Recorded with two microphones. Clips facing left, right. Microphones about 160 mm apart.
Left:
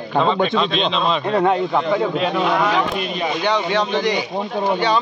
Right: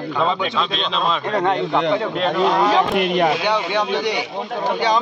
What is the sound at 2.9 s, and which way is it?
Speech, 65° right (ahead or behind).